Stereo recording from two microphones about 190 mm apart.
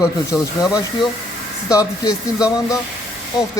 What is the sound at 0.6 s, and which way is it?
Speech, 20° left (ahead or behind).